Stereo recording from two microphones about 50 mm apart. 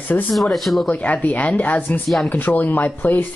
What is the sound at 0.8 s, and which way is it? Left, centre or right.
Speech, left.